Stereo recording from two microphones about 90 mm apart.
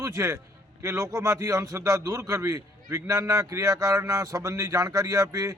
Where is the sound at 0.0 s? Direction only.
35° right (ahead or behind).